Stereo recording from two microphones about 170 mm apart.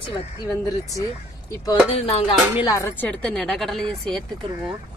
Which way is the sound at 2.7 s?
15° left (ahead or behind).